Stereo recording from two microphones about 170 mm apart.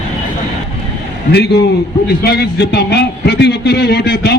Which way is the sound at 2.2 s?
70° left (ahead or behind).